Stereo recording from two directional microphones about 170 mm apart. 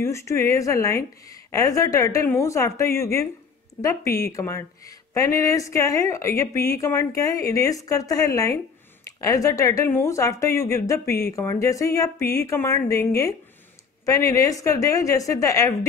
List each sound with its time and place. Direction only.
0.0 s a woman's voice: 15° left (ahead or behind)